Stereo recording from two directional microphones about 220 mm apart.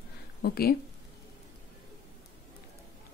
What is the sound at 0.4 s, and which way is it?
Speech, 45° left (ahead or behind).